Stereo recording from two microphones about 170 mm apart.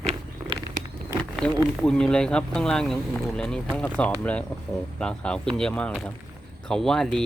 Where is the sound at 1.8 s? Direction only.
5° left (ahead or behind).